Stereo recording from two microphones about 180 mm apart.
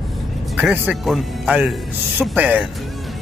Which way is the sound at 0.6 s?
5° right (ahead or behind).